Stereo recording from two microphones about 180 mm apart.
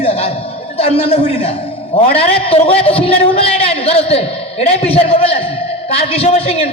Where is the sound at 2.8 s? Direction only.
30° left (ahead or behind).